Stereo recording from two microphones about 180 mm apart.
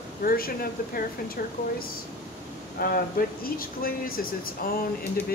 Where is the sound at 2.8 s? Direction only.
55° left (ahead or behind).